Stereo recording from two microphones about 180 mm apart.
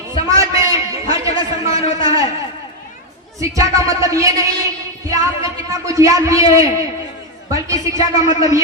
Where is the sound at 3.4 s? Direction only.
15° right (ahead or behind).